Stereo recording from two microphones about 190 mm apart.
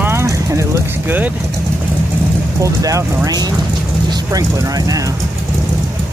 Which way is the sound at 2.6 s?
15° right (ahead or behind).